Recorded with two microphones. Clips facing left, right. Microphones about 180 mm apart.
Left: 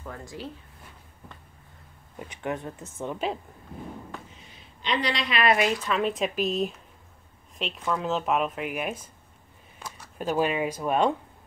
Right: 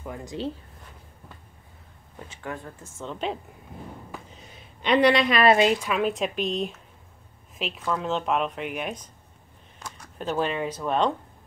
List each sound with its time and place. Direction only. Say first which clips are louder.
0.0 s speech: right 5 dB; 15° right (ahead or behind)
2.1 s speech: left 4 dB; 15° left (ahead or behind)
4.8 s a woman's voice: right 9 dB; 60° right (ahead or behind)
5.4 s speech: right 2 dB; 25° right (ahead or behind)
5.8 s speech: right 1 dB; 5° right (ahead or behind)